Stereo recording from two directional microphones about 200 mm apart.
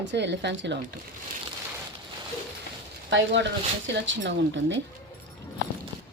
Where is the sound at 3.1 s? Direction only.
65° right (ahead or behind).